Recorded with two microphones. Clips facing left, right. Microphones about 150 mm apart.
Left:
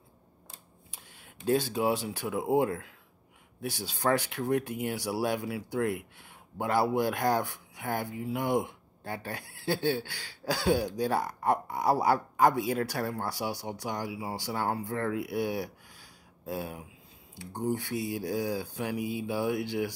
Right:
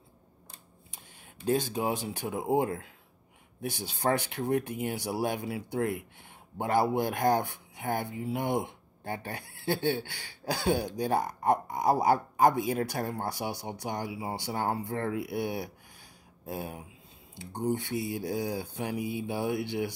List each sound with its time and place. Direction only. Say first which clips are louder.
1.2 s a sound: left 1 dB; 45° right (ahead or behind)
2.0 s speech: even; 20° right (ahead or behind)
4.0 s speech: left 1 dB; 20° right (ahead or behind)